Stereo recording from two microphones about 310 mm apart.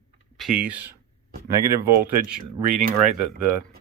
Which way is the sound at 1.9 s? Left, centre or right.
Right.